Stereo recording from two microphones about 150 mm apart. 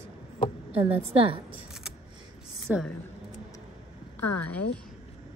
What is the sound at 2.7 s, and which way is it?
Speech, 10° right (ahead or behind).